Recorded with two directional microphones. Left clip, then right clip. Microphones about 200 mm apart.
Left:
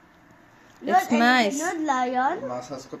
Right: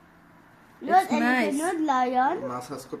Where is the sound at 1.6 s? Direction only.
20° right (ahead or behind).